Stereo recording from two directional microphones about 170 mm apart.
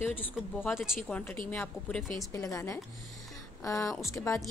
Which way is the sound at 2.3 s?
20° left (ahead or behind).